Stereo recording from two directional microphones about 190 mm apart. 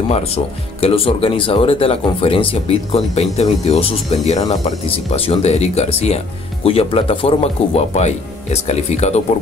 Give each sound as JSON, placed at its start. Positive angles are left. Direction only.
{"t": 0.7, "sound": "speech", "side_deg": 30}